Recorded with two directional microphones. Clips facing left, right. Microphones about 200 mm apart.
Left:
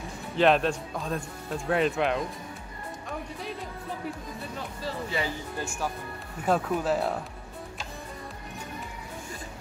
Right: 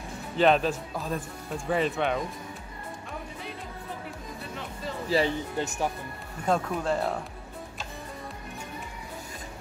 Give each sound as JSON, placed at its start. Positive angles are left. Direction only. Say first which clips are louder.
{"t": 0.4, "sound": "speech", "louder": "even", "side_deg": 0}
{"t": 5.1, "sound": "speech", "louder": "right 11 dB", "side_deg": -25}
{"t": 6.4, "sound": "speech", "louder": "left 1 dB", "side_deg": 5}